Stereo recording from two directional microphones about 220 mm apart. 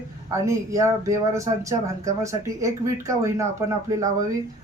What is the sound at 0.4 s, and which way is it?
Speech, 15° right (ahead or behind).